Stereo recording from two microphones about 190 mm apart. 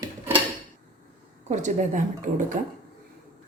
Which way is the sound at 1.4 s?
40° right (ahead or behind).